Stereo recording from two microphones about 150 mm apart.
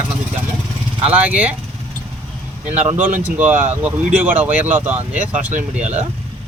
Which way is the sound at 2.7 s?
50° right (ahead or behind).